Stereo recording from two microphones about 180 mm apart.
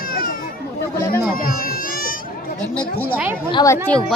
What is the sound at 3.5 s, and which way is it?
Speech, 20° left (ahead or behind).